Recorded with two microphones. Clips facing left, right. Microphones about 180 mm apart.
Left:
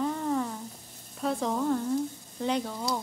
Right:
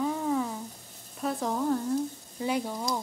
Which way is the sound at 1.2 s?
Centre (ahead or behind).